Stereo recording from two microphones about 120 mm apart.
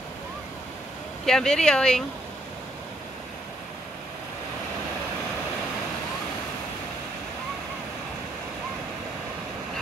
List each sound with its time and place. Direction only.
1.2 s speech: 5° left (ahead or behind)